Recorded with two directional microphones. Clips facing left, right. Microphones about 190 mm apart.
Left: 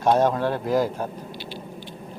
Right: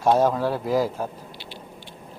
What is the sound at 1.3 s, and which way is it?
Patter, 25° right (ahead or behind).